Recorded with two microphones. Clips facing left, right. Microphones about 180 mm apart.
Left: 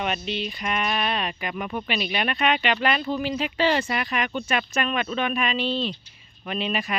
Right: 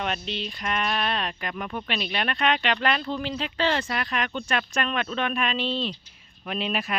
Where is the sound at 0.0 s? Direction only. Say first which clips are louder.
Left 2 dB; 5° left (ahead or behind).